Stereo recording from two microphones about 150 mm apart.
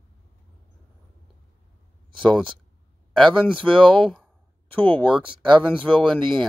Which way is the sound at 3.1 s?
5° left (ahead or behind).